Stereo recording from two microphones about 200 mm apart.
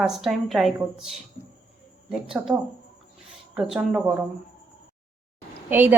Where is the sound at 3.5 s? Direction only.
Centre (ahead or behind).